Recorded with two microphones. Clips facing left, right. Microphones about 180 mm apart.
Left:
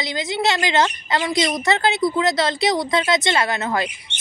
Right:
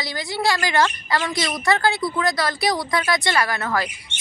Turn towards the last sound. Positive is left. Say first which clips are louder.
# left 1 dB
turn(degrees=20)  # may be behind; listen again after turning